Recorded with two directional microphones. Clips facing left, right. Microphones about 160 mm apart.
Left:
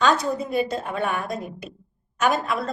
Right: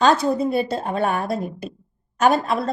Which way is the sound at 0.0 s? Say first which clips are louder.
Right 4 dB; 30° right (ahead or behind).